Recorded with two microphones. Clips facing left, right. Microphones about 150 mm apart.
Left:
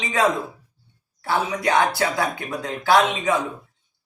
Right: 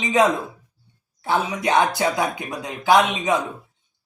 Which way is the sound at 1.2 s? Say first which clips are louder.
Even; 20° right (ahead or behind).